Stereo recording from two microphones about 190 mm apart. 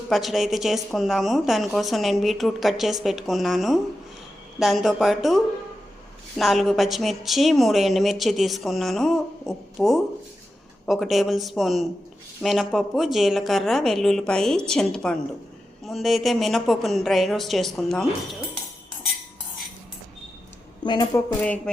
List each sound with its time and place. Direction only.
0.1 s a woman's voice: centre (ahead or behind)
20.8 s a woman's voice: 20° left (ahead or behind)